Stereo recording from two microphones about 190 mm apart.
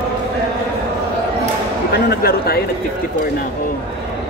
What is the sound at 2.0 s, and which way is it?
Speech, 55° left (ahead or behind).